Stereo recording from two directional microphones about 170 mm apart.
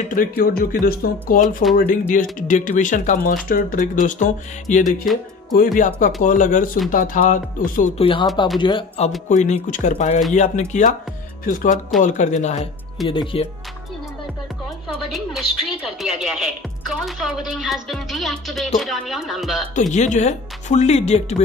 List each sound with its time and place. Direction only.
0.1 s speech: 55° left (ahead or behind)
8.0 s speech: 30° left (ahead or behind)
9.3 s speech: 45° left (ahead or behind)
13.0 s speech: 30° left (ahead or behind)
16.0 s speech: centre (ahead or behind)
19.7 s speech: 45° left (ahead or behind)